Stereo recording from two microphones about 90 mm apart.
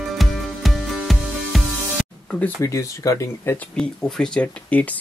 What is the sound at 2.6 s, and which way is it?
Speech, 35° left (ahead or behind).